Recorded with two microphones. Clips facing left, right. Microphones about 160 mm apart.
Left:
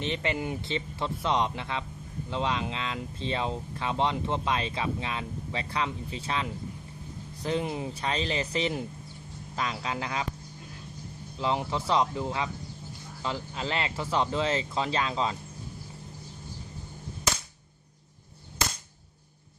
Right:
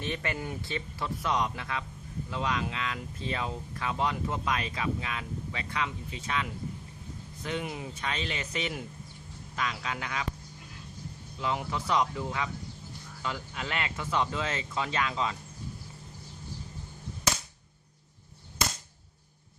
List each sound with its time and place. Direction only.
0.0 s speech: 20° left (ahead or behind)
11.3 s speech: 30° left (ahead or behind)